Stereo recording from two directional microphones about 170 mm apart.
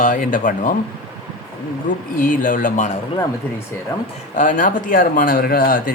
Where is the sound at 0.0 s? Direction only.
50° left (ahead or behind).